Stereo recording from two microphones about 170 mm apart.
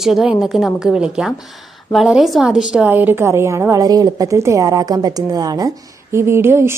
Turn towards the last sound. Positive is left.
turn(degrees=-15)  # may be behind; listen again after turning